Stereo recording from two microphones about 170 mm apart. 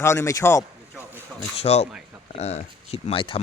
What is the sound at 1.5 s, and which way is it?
Speech, 40° left (ahead or behind).